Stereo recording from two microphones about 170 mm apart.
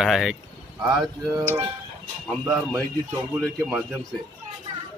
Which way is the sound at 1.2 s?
15° right (ahead or behind).